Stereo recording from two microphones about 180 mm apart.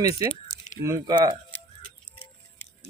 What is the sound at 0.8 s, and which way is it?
Speech, 20° right (ahead or behind).